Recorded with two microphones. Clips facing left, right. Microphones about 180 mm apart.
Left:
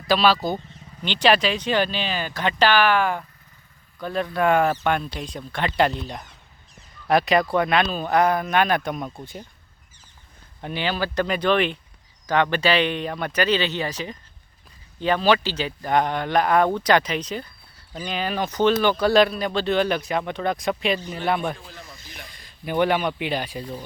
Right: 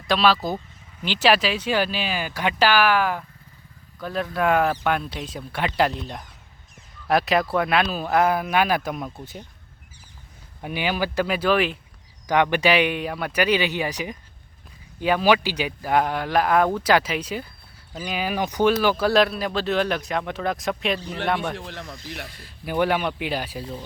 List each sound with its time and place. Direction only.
0.1 s speech: centre (ahead or behind)
10.6 s speech: 10° right (ahead or behind)
21.5 s speech: 80° right
22.3 s speech: 5° right (ahead or behind)